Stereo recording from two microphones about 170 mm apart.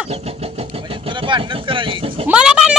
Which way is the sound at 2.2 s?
5° right (ahead or behind).